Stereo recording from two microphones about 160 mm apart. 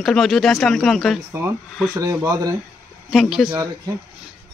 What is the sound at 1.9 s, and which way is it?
Speech, 20° right (ahead or behind).